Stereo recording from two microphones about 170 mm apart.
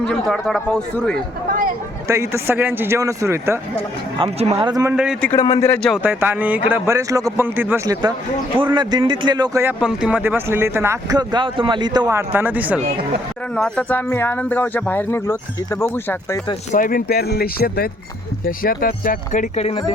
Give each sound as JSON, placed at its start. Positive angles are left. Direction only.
{"t": 0.3, "sound": "speech", "side_deg": 0}
{"t": 2.0, "sound": "speech", "side_deg": -15}
{"t": 4.2, "sound": "speech", "side_deg": -40}
{"t": 4.5, "sound": "a man's voice", "side_deg": -20}
{"t": 5.2, "sound": "speech", "side_deg": 15}
{"t": 6.0, "sound": "speech", "side_deg": -10}
{"t": 8.6, "sound": "a man's voice", "side_deg": -25}
{"t": 13.6, "sound": "speech", "side_deg": 10}
{"t": 16.7, "sound": "speech", "side_deg": 55}